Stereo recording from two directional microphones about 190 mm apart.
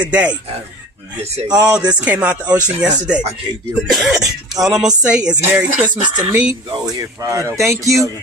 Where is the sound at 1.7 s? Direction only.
5° right (ahead or behind).